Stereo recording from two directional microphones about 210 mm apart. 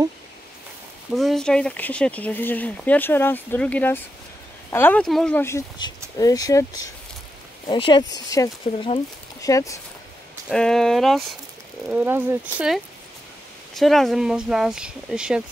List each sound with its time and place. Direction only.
1.1 s speech: centre (ahead or behind)
10.5 s speech: 5° left (ahead or behind)